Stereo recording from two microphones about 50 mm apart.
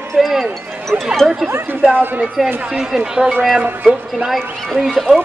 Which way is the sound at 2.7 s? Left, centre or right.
Centre.